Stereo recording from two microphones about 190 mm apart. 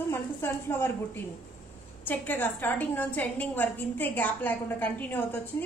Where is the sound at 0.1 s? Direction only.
10° left (ahead or behind).